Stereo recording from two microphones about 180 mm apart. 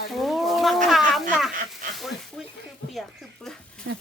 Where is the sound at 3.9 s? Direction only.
90° right.